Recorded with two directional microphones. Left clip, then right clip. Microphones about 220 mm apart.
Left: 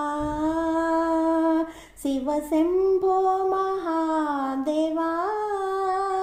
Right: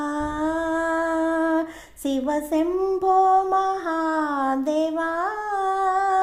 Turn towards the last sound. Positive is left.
turn(degrees=-25)  # may be behind; listen again after turning